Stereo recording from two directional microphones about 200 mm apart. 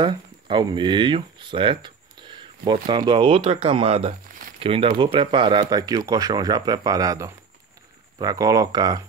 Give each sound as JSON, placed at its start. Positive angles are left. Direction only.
{"t": 0.0, "sound": "speech", "side_deg": -20}
{"t": 4.6, "sound": "speech", "side_deg": -25}